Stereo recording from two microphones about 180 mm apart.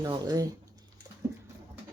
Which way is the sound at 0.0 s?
20° right (ahead or behind).